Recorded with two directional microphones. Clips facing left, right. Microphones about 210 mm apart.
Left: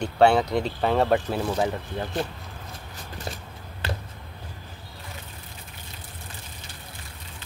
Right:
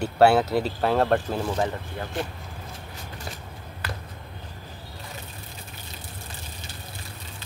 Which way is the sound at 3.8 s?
25° left (ahead or behind).